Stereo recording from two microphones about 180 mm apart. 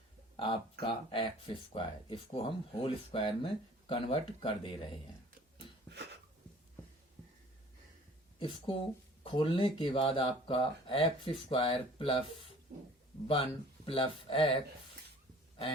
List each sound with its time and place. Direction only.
0.3 s speech: 30° left (ahead or behind)
8.4 s speech: 30° left (ahead or behind)